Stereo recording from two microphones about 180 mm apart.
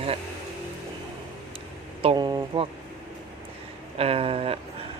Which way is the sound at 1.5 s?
30° right (ahead or behind).